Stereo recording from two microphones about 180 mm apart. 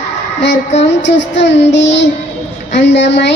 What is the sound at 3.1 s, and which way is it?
Child singing, 75° left (ahead or behind).